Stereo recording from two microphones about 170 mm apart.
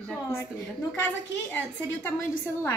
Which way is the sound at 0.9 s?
15° left (ahead or behind).